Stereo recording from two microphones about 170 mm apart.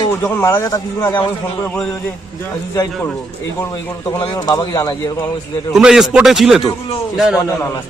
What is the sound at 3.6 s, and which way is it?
Speech, 15° left (ahead or behind).